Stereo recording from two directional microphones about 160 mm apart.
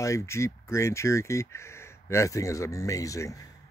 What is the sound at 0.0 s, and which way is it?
Speech, 20° left (ahead or behind).